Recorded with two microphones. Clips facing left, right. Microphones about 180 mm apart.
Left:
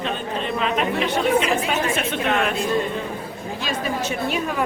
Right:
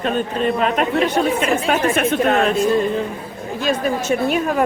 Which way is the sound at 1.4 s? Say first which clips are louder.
Right 4 dB; 50° right (ahead or behind).